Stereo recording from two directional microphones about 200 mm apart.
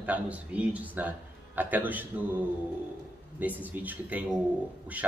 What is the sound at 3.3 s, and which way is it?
Speech, 10° right (ahead or behind).